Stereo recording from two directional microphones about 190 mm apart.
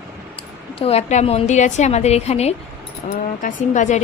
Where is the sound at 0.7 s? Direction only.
35° left (ahead or behind).